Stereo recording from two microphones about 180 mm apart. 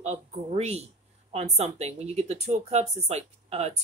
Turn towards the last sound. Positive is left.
turn(degrees=-35)  # may be behind; listen again after turning